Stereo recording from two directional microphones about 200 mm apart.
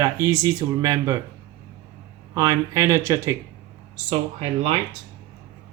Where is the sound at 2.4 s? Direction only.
15° right (ahead or behind).